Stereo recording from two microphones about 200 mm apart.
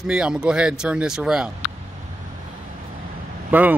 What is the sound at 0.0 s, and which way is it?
Speech, 5° right (ahead or behind).